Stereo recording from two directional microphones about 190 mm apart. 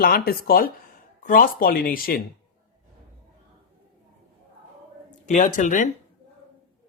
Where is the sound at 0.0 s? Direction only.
55° left (ahead or behind).